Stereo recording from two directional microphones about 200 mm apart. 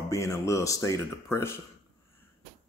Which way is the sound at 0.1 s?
15° left (ahead or behind).